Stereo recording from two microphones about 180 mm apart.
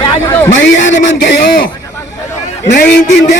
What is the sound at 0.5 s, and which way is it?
Speech, 90° left.